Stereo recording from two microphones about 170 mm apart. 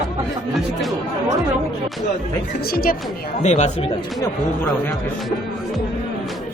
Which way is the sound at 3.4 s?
45° left (ahead or behind).